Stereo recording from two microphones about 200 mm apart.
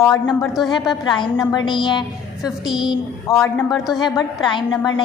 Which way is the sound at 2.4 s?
Centre (ahead or behind).